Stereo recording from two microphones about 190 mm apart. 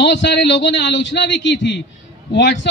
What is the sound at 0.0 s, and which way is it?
A man's voice, 65° left (ahead or behind).